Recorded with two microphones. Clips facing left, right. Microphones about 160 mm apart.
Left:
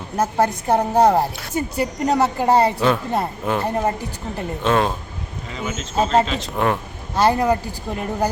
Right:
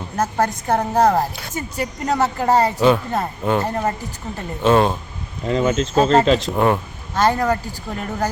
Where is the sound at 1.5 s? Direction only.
30° left (ahead or behind).